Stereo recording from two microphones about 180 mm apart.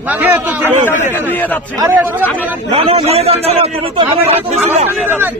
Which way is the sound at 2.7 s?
35° right (ahead or behind).